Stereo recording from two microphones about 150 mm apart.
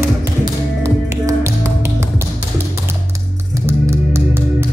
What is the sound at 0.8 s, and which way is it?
Music, 20° right (ahead or behind).